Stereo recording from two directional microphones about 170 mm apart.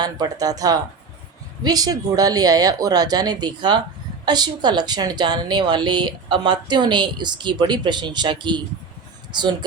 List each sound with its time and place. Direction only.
0.0 s a woman's voice: 25° right (ahead or behind)